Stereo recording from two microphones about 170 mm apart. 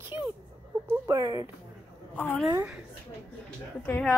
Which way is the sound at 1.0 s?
20° right (ahead or behind).